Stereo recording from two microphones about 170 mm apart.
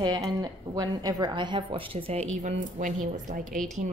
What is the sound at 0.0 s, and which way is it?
A woman's voice, 20° right (ahead or behind).